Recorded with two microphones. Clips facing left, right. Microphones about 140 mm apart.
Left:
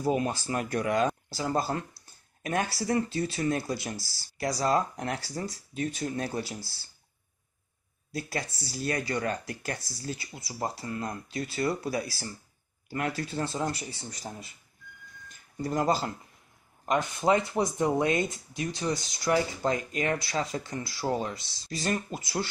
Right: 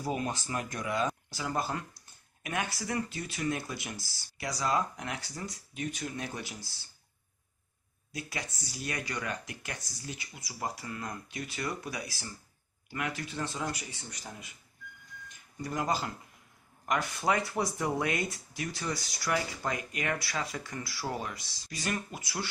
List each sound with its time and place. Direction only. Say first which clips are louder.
0.0 s speech: left 6 dB; 35° left (ahead or behind)
8.1 s speech: left 6 dB; 35° left (ahead or behind)
15.6 s speech: left 5 dB; 35° left (ahead or behind)
16.8 s speech: left 4 dB; 25° left (ahead or behind)